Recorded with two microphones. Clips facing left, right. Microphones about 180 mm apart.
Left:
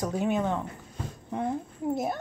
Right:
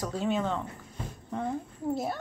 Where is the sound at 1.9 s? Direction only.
20° left (ahead or behind).